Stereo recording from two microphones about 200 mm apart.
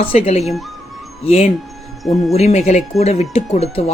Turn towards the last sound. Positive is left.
turn(degrees=30)  # may be behind; listen again after turning